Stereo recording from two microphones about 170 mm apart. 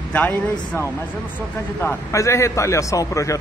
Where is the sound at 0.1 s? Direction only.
10° left (ahead or behind).